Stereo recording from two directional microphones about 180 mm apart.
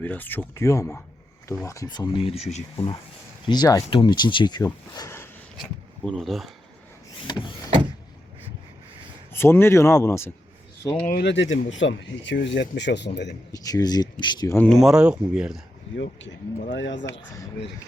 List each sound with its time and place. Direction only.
0.0 s speech: 10° left (ahead or behind)
6.1 s speech: centre (ahead or behind)
7.3 s speech: 25° left (ahead or behind)
9.3 s speech: 15° left (ahead or behind)
11.0 s speech: 60° left (ahead or behind)
13.5 s speech: 20° left (ahead or behind)
14.7 s speech: centre (ahead or behind)
16.7 s speech: 85° left